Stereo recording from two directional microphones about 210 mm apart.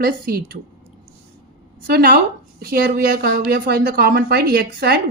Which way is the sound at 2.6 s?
45° right (ahead or behind).